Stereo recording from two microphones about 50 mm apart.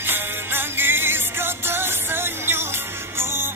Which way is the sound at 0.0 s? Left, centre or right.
Right.